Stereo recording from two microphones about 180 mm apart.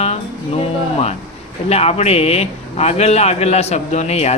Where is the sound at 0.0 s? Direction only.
35° left (ahead or behind).